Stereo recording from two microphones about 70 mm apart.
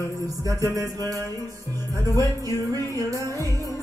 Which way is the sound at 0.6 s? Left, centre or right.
Right.